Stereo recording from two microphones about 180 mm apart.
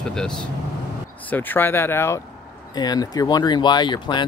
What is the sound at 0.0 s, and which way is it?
Speech, 5° left (ahead or behind).